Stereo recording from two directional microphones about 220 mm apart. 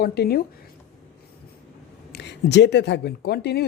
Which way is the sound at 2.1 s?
50° left (ahead or behind).